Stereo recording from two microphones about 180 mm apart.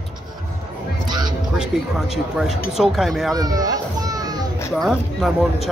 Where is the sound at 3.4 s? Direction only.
20° right (ahead or behind).